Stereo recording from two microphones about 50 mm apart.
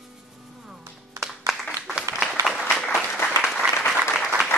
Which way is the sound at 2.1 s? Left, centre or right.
Right.